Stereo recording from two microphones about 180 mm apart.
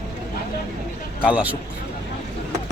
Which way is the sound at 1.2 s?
5° right (ahead or behind).